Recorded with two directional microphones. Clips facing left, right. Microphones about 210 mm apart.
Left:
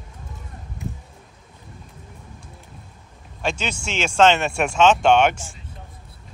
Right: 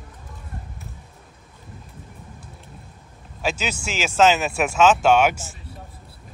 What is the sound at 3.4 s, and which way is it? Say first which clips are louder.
Speech: even; 5° right (ahead or behind).